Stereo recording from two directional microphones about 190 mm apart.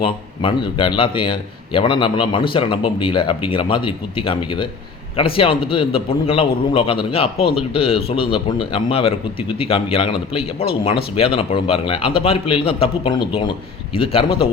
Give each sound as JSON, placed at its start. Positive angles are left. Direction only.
{"t": 0.0, "sound": "a man's voice", "side_deg": 25}